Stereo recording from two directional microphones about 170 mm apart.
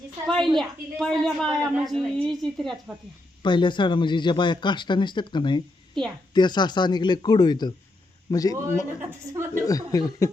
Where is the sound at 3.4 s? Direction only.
25° left (ahead or behind).